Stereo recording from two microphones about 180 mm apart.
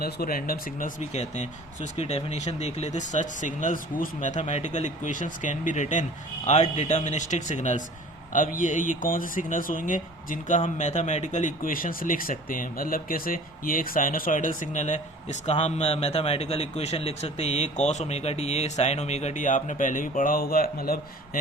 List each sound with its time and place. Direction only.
0.0 s speech: 55° left (ahead or behind)